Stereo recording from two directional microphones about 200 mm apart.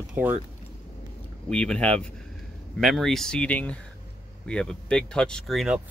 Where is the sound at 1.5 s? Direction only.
5° left (ahead or behind).